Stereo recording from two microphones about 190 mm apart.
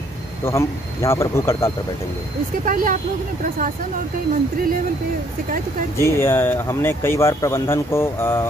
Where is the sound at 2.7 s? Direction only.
45° right (ahead or behind).